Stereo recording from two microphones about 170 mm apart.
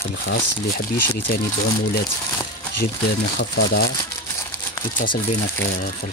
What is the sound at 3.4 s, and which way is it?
Speech, 75° left (ahead or behind).